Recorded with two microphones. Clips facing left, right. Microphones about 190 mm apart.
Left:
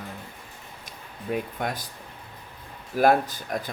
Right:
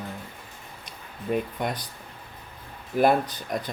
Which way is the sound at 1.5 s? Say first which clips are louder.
Right 1 dB; 50° left (ahead or behind).